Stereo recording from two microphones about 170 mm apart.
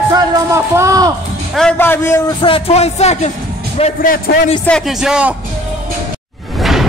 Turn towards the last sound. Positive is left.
turn(degrees=0)  # may be behind; listen again after turning